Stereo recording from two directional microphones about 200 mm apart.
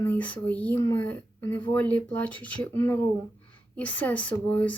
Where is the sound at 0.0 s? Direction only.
10° left (ahead or behind).